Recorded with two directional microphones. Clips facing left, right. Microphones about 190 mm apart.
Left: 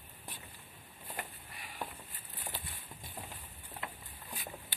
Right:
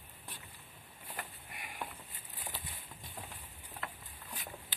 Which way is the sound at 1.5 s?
10° right (ahead or behind).